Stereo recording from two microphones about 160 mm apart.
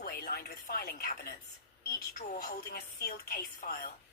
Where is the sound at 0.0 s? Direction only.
75° left (ahead or behind).